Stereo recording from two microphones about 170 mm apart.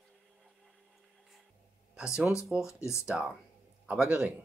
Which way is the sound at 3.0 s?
5° right (ahead or behind).